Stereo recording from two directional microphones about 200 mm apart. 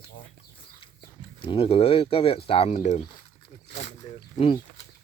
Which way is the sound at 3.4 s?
30° left (ahead or behind).